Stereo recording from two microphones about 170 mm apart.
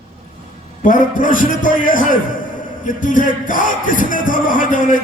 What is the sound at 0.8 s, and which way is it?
Music, 50° left (ahead or behind).